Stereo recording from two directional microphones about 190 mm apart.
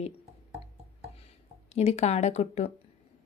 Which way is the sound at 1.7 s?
35° left (ahead or behind).